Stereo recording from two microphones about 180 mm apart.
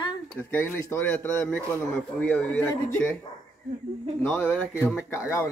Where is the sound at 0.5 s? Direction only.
10° left (ahead or behind).